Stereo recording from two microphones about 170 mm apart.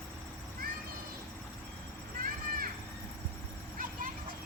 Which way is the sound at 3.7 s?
55° right (ahead or behind).